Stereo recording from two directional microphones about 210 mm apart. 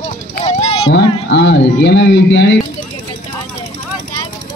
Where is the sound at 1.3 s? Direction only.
55° left (ahead or behind).